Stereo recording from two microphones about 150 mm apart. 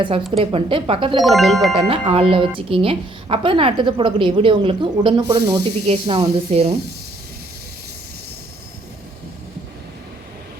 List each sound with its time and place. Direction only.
0.0 s a woman's voice: 40° right (ahead or behind)
1.2 s speech: centre (ahead or behind)
1.7 s a woman's voice: 35° right (ahead or behind)
5.6 s speech: 45° right (ahead or behind)